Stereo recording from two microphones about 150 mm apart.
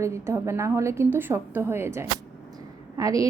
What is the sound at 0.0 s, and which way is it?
A woman's voice, 20° right (ahead or behind).